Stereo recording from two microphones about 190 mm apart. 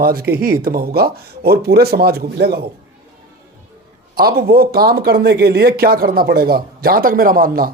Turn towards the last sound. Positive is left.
turn(degrees=-50)  # may be behind; listen again after turning